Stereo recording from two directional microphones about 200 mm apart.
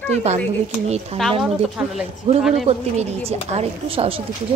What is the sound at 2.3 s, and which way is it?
A woman's voice, 30° right (ahead or behind).